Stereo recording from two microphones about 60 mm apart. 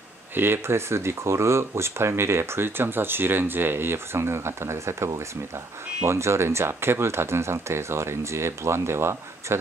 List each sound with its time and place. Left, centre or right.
0.3 s speech: right